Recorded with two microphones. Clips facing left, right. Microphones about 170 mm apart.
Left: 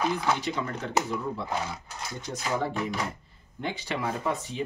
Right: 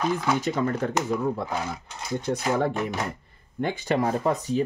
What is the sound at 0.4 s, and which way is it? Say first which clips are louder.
Speech: right 6 dB; 45° right (ahead or behind).